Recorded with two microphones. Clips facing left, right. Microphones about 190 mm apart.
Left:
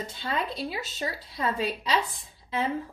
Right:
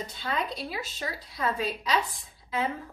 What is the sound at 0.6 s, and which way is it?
A woman's voice, 25° left (ahead or behind).